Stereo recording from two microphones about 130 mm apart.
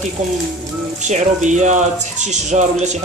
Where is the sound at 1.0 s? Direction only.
70° right (ahead or behind).